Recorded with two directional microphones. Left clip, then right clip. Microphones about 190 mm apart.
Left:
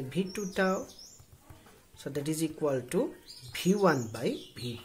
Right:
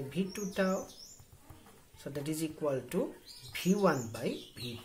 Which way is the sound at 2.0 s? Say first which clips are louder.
Left 4 dB; 30° left (ahead or behind).